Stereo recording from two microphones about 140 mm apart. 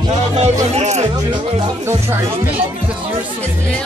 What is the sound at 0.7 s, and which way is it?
Speech, 55° right (ahead or behind).